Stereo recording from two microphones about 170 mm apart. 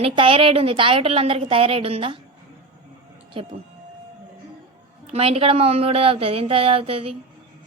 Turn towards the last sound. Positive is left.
turn(degrees=-35)  # may be behind; listen again after turning